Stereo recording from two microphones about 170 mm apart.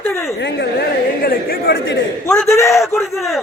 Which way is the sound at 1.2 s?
65° left (ahead or behind).